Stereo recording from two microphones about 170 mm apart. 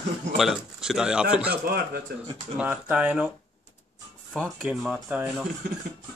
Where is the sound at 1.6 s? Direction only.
65° right (ahead or behind).